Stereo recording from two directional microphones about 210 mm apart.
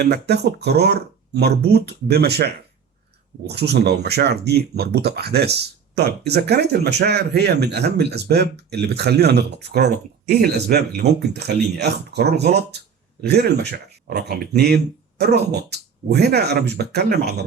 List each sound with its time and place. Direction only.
0.0 s speech: 50° right (ahead or behind)